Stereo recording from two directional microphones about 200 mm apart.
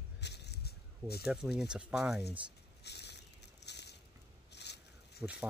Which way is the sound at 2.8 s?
55° left (ahead or behind).